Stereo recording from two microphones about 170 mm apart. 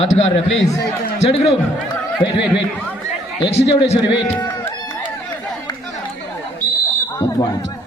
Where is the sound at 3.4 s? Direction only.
35° left (ahead or behind).